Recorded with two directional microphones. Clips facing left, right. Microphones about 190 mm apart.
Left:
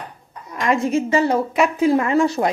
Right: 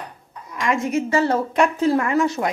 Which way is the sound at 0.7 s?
30° left (ahead or behind).